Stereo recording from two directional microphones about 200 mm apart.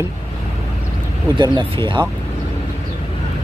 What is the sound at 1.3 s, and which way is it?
Speech, 25° right (ahead or behind).